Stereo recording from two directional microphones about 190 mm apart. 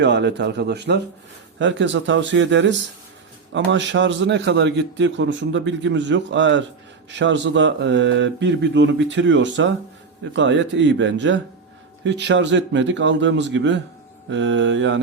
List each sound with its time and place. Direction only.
0.0 s a man's voice: 65° right (ahead or behind)